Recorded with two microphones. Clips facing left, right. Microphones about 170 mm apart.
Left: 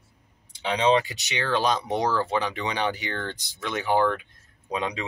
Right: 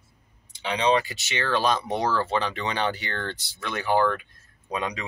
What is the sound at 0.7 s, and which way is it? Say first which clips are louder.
Speech: left 1 dB; 25° left (ahead or behind).